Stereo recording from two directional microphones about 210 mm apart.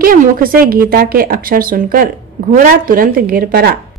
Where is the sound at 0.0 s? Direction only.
40° right (ahead or behind).